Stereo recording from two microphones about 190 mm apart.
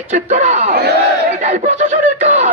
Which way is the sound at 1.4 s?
35° right (ahead or behind).